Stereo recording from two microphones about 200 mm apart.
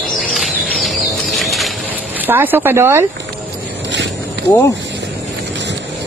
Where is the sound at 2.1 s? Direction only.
10° right (ahead or behind).